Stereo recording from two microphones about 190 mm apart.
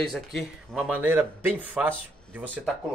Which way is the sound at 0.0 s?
Centre (ahead or behind).